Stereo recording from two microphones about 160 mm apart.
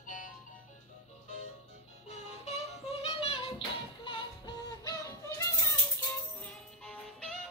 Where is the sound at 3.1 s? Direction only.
35° left (ahead or behind); by 5.5 s 20° left (ahead or behind).